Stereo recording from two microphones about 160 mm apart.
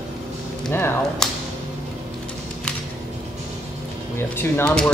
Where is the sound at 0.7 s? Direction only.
15° left (ahead or behind).